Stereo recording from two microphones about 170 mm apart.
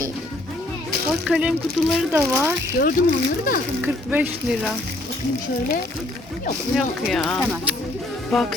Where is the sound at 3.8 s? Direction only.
10° right (ahead or behind).